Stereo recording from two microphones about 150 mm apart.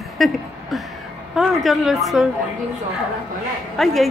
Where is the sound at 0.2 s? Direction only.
Centre (ahead or behind).